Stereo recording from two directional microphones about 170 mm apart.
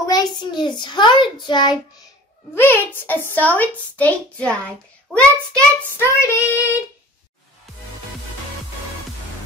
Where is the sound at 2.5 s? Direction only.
10° left (ahead or behind).